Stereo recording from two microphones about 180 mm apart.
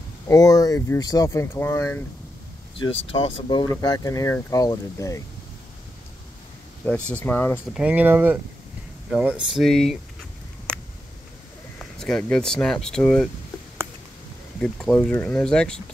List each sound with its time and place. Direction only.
0.3 s speech: 20° left (ahead or behind)
3.1 s speech: 30° left (ahead or behind)
6.9 s speech: 10° left (ahead or behind)
7.7 s speech: 5° right (ahead or behind)
12.0 s speech: 5° left (ahead or behind)
14.6 s speech: 5° left (ahead or behind)